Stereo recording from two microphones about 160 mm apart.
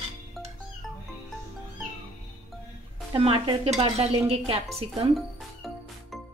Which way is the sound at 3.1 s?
35° right (ahead or behind).